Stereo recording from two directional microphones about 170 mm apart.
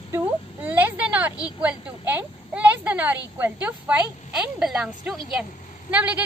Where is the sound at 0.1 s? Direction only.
10° right (ahead or behind).